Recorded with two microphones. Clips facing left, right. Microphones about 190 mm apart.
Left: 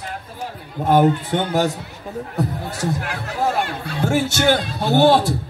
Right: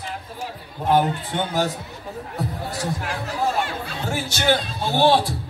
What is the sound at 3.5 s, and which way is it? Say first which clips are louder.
A man's voice: left 2 dB; 50° left (ahead or behind).